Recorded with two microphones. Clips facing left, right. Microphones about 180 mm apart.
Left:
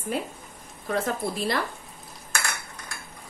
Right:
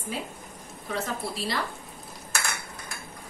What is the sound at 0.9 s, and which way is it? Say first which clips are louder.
Speech: left 4 dB; 55° left (ahead or behind).